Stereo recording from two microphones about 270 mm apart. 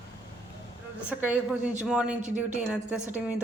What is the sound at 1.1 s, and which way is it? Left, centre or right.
A woman's voice, centre.